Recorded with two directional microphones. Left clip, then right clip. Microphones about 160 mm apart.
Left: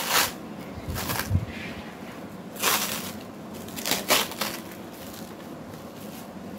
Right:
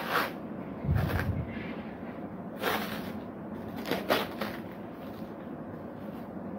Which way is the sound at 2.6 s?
15° left (ahead or behind).